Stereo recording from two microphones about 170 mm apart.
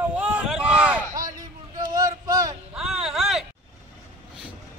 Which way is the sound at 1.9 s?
20° right (ahead or behind).